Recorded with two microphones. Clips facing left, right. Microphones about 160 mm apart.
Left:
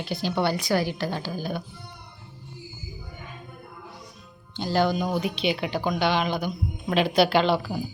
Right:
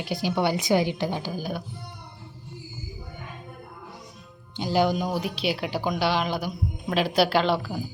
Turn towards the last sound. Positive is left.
turn(degrees=0)  # may be behind; listen again after turning